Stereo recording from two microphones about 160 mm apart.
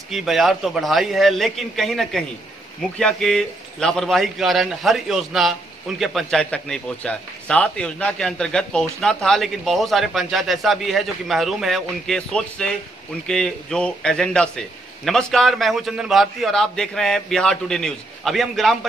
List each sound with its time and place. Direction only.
0.1 s a man's voice: centre (ahead or behind)